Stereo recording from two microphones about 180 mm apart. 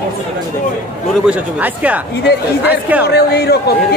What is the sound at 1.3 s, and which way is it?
Speech, 10° right (ahead or behind).